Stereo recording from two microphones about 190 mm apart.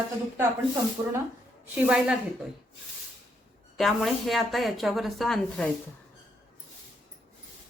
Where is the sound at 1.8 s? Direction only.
5° right (ahead or behind).